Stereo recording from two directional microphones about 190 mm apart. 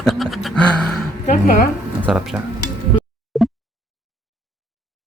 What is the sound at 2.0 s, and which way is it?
Speech, 5° right (ahead or behind).